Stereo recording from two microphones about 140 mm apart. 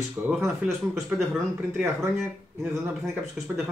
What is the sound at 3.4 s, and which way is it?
Speech, 5° right (ahead or behind).